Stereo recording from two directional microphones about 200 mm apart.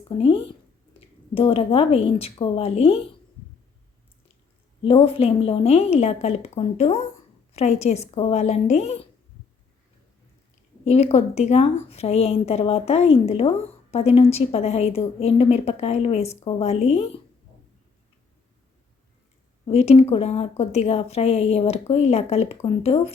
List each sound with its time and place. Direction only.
0.2 s speech: 30° left (ahead or behind)
4.8 s a woman's voice: 30° left (ahead or behind)
10.8 s a woman's voice: 35° left (ahead or behind)
19.6 s a woman's voice: 30° left (ahead or behind)